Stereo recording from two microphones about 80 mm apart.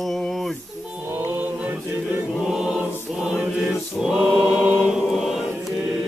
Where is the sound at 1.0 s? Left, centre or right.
Right.